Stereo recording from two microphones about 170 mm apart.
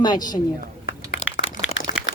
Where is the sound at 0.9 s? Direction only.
70° left (ahead or behind).